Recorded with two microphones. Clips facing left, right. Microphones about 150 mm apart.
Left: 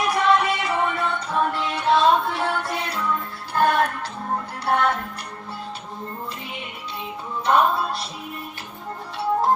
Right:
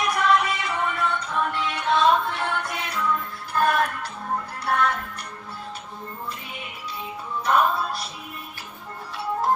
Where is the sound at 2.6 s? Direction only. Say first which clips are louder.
Left 1 dB; 30° left (ahead or behind).